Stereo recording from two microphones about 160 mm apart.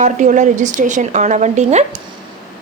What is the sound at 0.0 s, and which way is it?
Speech, 50° right (ahead or behind).